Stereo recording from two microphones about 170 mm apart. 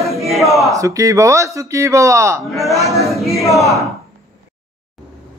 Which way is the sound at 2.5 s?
Centre (ahead or behind).